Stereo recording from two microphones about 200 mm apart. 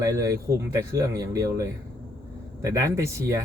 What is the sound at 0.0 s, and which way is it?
Speech, 15° right (ahead or behind).